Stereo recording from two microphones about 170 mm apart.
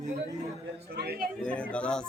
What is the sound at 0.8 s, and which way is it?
Speech, 70° right (ahead or behind).